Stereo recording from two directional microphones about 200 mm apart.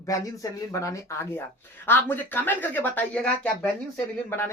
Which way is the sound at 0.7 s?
15° left (ahead or behind).